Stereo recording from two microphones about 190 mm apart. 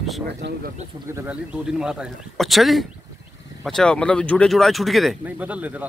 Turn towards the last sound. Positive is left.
turn(degrees=-10)  # may be behind; listen again after turning